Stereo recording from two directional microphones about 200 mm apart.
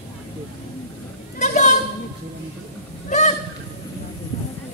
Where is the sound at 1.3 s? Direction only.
35° left (ahead or behind).